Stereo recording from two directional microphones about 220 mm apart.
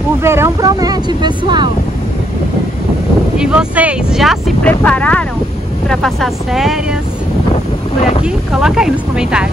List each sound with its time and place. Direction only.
0.2 s speech: 10° right (ahead or behind)
3.3 s speech: 5° right (ahead or behind)
8.2 s speech: 5° right (ahead or behind)